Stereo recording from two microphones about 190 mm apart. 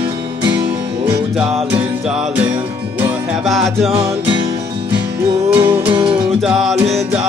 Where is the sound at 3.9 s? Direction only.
30° right (ahead or behind).